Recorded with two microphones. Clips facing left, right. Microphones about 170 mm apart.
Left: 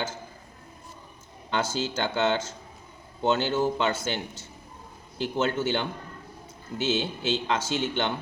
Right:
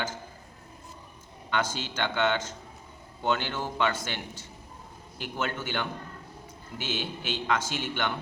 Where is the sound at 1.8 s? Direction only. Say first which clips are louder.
Left 2 dB; 25° left (ahead or behind).